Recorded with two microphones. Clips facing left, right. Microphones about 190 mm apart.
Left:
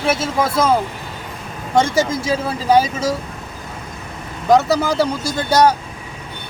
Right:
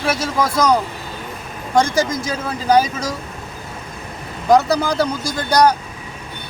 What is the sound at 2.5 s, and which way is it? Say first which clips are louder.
Speech: even; centre (ahead or behind).